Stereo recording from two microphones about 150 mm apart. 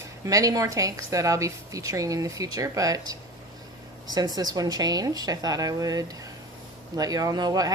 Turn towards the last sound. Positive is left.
turn(degrees=-25)  # may be behind; listen again after turning